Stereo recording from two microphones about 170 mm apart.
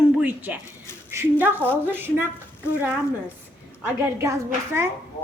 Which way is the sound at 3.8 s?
15° right (ahead or behind).